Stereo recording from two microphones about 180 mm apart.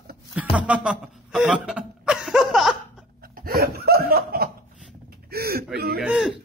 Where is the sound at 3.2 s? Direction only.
55° right (ahead or behind).